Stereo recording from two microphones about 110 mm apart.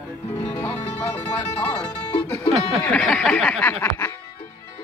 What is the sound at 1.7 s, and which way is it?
Music, 35° left (ahead or behind).